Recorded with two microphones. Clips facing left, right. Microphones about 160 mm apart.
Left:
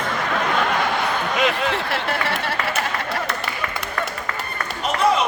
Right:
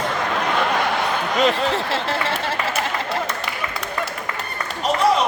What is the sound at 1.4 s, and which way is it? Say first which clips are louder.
Speech: right 4 dB; 30° right (ahead or behind).